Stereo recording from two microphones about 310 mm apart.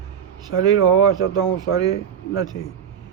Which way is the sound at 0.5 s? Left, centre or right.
Left.